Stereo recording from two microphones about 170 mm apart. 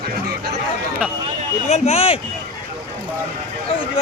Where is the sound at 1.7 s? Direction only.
40° left (ahead or behind).